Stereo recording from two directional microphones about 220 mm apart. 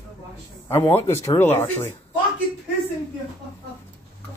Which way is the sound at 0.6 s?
10° left (ahead or behind).